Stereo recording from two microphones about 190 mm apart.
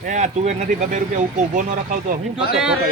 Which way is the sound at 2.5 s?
5° right (ahead or behind).